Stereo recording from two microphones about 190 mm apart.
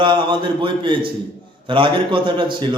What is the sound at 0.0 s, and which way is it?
A man's voice, 25° right (ahead or behind).